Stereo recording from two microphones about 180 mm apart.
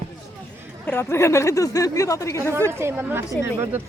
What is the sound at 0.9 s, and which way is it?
Speech, 15° left (ahead or behind).